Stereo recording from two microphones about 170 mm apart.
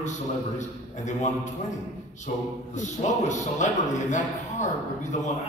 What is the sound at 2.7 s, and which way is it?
A man's voice, 45° left (ahead or behind).